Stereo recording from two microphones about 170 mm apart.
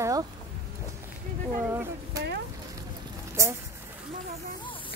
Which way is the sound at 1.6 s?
15° right (ahead or behind).